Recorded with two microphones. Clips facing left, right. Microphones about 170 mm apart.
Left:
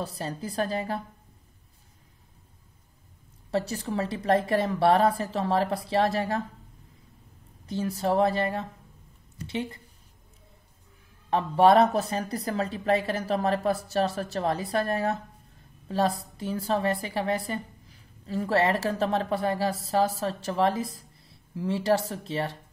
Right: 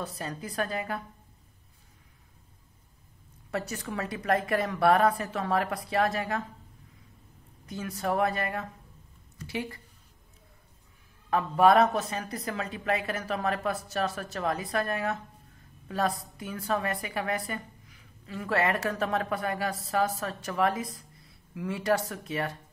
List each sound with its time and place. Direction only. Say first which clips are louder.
0.0 s a woman's voice: left 3 dB; 30° left (ahead or behind)
3.5 s a woman's voice: left 5 dB; 30° left (ahead or behind)
7.6 s a woman's voice: left 4 dB; 30° left (ahead or behind)
11.2 s a woman's voice: left 2 dB; 30° left (ahead or behind)